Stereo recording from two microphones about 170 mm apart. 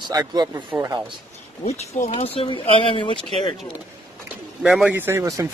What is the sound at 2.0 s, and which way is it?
Speech, 35° left (ahead or behind).